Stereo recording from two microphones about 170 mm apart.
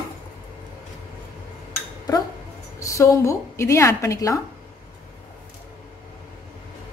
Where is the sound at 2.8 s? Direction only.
20° left (ahead or behind).